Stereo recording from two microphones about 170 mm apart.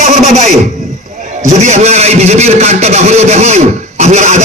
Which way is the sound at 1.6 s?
40° right (ahead or behind).